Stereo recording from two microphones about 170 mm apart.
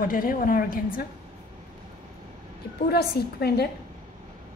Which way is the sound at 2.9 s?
70° left (ahead or behind).